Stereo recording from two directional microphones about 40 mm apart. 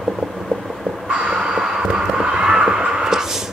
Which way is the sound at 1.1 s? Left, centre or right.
Right.